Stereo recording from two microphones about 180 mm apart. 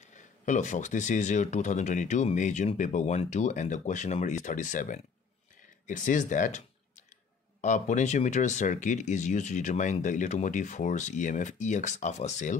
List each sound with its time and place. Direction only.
0.1 s speech: 40° left (ahead or behind)
7.6 s speech: 45° left (ahead or behind)